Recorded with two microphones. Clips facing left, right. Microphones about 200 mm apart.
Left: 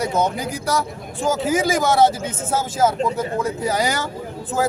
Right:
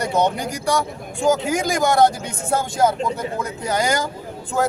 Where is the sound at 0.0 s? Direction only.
Centre (ahead or behind).